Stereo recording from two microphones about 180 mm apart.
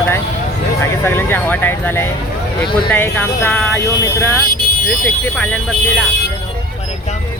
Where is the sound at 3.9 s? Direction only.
15° left (ahead or behind).